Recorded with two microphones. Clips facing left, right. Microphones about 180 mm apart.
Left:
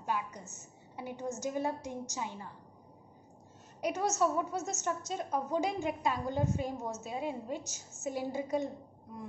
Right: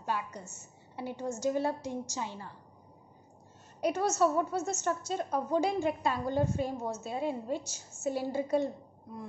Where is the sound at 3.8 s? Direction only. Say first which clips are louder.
Right 3 dB; 15° left (ahead or behind).